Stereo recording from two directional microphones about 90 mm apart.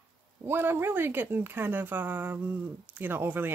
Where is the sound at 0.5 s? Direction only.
25° right (ahead or behind).